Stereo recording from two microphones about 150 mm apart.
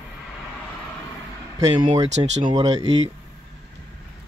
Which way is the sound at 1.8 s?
50° right (ahead or behind).